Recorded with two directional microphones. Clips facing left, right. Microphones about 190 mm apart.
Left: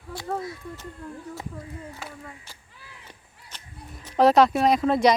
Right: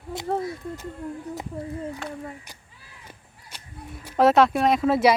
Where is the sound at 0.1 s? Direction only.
25° right (ahead or behind).